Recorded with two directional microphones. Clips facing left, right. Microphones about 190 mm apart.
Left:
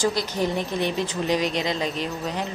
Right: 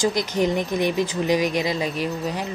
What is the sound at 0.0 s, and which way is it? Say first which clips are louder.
Speech: right 3 dB; 15° right (ahead or behind).